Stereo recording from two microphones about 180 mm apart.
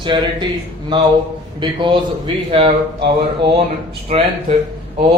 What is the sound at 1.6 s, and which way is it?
Speech, 25° right (ahead or behind).